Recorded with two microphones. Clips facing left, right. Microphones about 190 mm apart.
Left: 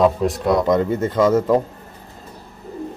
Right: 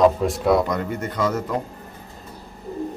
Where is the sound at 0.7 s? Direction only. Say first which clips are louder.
Left 8 dB; 25° left (ahead or behind).